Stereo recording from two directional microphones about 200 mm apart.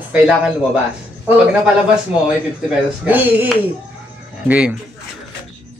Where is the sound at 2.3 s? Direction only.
5° right (ahead or behind).